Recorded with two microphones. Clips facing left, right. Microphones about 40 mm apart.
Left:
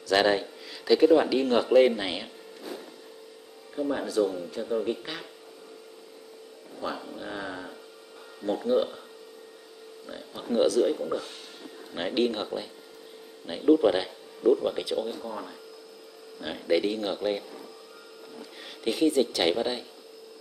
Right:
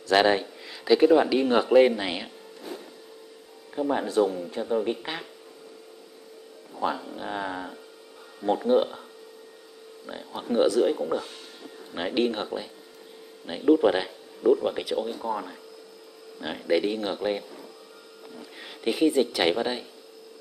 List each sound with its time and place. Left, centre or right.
0.1 s speech: centre
3.7 s speech: right
6.8 s speech: right
10.0 s speech: right
10.5 s speech: centre
18.6 s a woman's voice: centre